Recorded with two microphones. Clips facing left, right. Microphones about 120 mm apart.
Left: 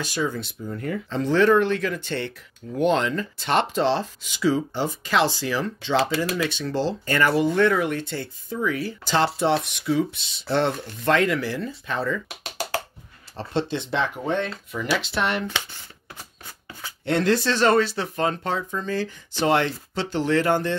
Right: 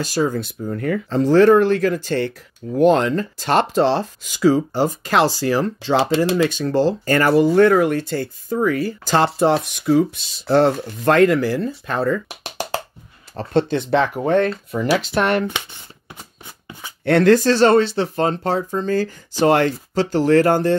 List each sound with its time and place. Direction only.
0.1 s speech: 40° right (ahead or behind)
0.4 s speech: 55° right (ahead or behind)
1.1 s speech: 40° right (ahead or behind)
12.4 s music: 25° right (ahead or behind)
13.4 s speech: 50° right (ahead or behind)
14.7 s speech: 40° right (ahead or behind)
17.0 s speech: 55° right (ahead or behind); by 20.7 s 40° right (ahead or behind)